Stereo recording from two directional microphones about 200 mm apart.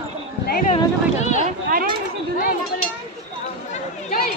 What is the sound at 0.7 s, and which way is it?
Speech, 35° left (ahead or behind).